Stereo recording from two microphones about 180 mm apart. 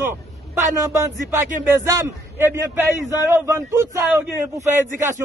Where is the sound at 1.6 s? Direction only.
15° right (ahead or behind).